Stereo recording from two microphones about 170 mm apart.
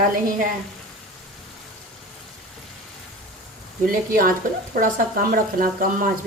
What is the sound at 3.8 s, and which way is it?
Speech, 55° right (ahead or behind).